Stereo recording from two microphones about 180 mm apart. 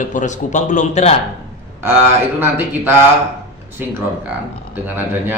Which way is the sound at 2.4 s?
10° right (ahead or behind).